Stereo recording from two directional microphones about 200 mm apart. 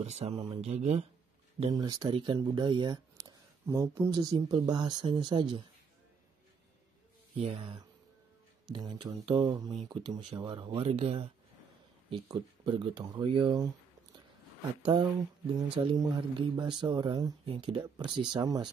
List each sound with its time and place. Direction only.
0.0 s speech: 35° right (ahead or behind)
1.7 s speech: 20° right (ahead or behind)
7.3 s speech: 30° right (ahead or behind)
14.8 s speech: 25° right (ahead or behind)